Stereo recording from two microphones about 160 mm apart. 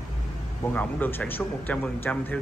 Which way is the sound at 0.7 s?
10° left (ahead or behind).